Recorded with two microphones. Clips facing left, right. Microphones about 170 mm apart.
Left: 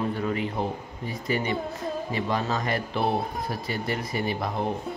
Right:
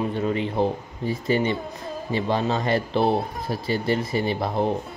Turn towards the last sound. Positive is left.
turn(degrees=-30)  # may be behind; listen again after turning